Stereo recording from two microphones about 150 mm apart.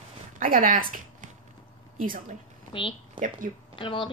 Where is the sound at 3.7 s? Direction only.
35° left (ahead or behind).